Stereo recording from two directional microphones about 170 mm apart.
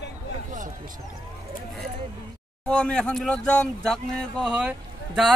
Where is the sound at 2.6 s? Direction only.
5° left (ahead or behind).